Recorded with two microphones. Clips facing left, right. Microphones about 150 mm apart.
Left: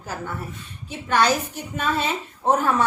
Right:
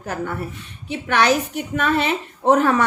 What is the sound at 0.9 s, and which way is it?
A woman's voice, 75° right (ahead or behind).